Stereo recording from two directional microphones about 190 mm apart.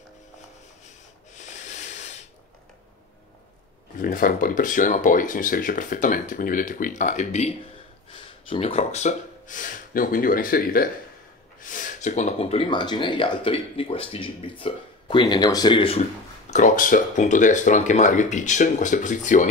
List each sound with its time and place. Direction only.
0.8 s rub: 40° left (ahead or behind)
4.0 s speech: 45° left (ahead or behind); by 16.0 s 25° left (ahead or behind)
16.4 s speech: 40° left (ahead or behind)